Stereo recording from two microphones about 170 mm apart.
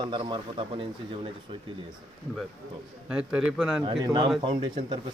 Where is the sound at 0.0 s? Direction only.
30° right (ahead or behind).